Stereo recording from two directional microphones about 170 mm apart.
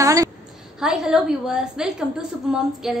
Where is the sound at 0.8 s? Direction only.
5° right (ahead or behind).